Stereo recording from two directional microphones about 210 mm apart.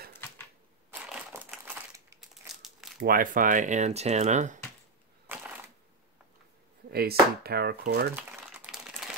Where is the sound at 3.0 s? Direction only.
45° right (ahead or behind).